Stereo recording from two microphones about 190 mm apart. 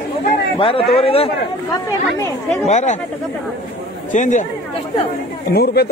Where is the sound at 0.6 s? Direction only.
30° left (ahead or behind).